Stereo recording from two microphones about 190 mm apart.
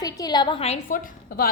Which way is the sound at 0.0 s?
20° left (ahead or behind).